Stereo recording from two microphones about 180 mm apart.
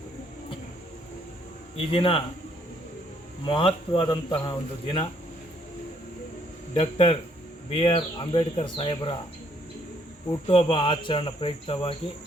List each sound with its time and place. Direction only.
1.7 s speech: 30° left (ahead or behind)
3.4 s speech: 30° left (ahead or behind)
6.7 s speech: 30° left (ahead or behind)
10.4 s speech: 30° left (ahead or behind)